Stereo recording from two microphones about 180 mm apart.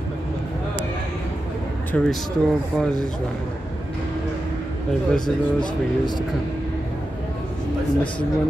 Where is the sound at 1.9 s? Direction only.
5° left (ahead or behind).